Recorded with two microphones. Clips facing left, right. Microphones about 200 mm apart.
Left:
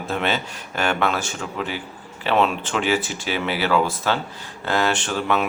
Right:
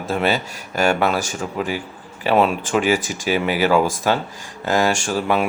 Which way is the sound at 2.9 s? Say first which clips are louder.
Right 1 dB; 40° right (ahead or behind).